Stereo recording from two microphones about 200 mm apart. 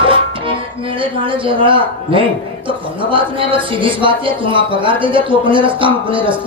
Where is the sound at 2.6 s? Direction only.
25° right (ahead or behind).